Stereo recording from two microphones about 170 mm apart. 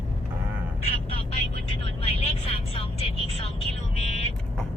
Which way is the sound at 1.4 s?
35° left (ahead or behind).